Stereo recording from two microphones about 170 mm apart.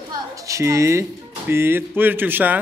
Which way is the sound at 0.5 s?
15° right (ahead or behind).